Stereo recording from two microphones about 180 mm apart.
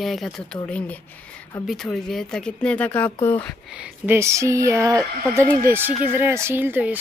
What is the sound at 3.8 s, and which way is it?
Speech, 10° right (ahead or behind).